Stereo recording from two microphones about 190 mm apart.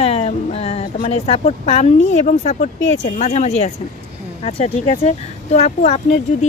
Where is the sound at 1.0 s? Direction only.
35° left (ahead or behind).